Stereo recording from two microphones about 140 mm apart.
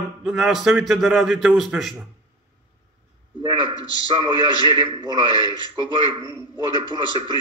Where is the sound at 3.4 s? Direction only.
35° right (ahead or behind).